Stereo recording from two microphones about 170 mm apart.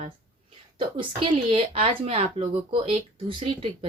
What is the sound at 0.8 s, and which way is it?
Speech, 30° right (ahead or behind).